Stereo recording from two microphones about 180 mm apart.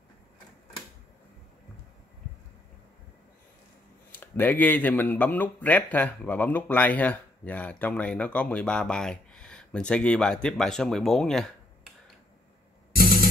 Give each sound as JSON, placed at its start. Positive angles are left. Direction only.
{"t": 4.1, "sound": "a man's voice", "side_deg": 10}